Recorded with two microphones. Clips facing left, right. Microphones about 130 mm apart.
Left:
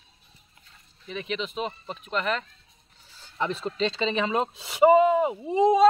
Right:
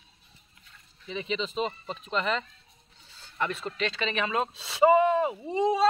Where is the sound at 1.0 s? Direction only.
Centre (ahead or behind).